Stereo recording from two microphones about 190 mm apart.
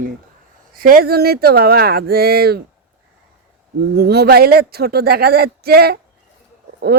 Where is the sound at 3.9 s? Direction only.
60° right (ahead or behind).